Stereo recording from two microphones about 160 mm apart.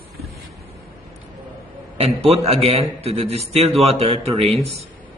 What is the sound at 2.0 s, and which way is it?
A man's voice, 40° right (ahead or behind).